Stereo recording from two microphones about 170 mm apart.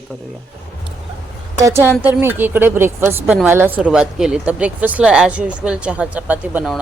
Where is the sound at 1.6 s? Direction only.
20° right (ahead or behind).